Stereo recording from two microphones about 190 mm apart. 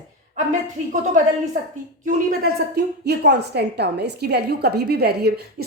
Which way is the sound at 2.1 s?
50° right (ahead or behind).